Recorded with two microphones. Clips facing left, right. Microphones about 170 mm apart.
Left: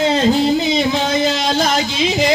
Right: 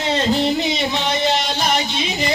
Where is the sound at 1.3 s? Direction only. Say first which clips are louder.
Left 3 dB; 90° left.